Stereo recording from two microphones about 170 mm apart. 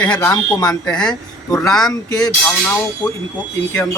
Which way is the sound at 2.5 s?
10° left (ahead or behind).